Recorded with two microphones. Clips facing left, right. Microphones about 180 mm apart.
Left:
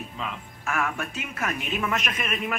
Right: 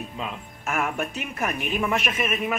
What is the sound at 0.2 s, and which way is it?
A man's voice, 20° right (ahead or behind).